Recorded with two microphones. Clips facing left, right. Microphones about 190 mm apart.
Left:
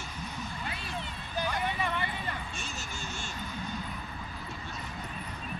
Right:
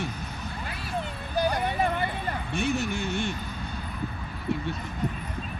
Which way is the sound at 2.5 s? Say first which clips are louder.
Right 14 dB; 60° right (ahead or behind).